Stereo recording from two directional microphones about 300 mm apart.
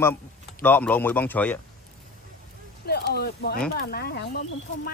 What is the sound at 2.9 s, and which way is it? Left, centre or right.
Speech, left.